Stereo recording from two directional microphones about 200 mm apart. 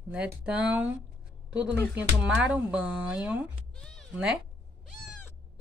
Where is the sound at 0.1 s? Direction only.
5° right (ahead or behind).